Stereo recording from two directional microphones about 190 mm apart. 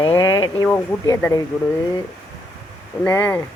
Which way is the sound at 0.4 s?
20° left (ahead or behind).